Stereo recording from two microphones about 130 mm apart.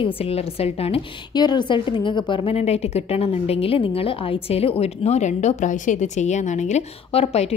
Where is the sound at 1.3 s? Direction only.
35° left (ahead or behind).